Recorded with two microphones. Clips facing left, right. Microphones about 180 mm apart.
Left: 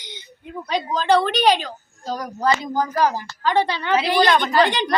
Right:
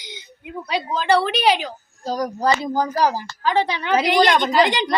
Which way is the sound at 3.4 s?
10° right (ahead or behind).